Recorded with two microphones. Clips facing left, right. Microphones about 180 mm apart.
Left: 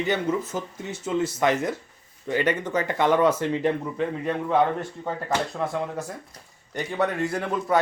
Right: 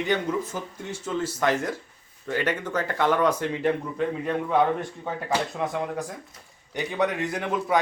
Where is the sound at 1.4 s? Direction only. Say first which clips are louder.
Left 2 dB; 5° left (ahead or behind).